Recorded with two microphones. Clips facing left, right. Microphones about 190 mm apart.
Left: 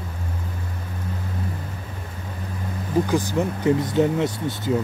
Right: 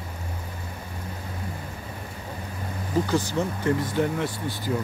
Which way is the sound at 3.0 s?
15° left (ahead or behind).